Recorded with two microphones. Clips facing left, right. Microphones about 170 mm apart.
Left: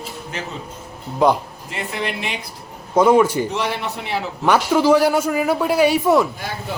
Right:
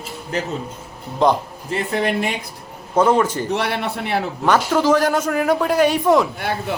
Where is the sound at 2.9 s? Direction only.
10° left (ahead or behind).